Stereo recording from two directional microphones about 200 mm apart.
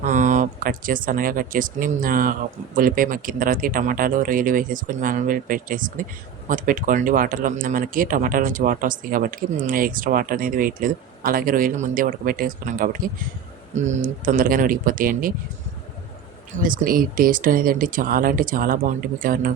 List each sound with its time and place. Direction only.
0.0 s speech: 35° right (ahead or behind)
16.6 s speech: 45° right (ahead or behind)